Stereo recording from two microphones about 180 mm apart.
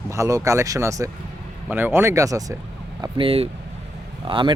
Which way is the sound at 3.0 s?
30° right (ahead or behind).